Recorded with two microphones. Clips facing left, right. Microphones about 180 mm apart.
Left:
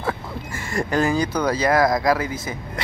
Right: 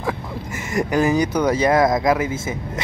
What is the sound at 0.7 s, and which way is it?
Speech, 20° right (ahead or behind).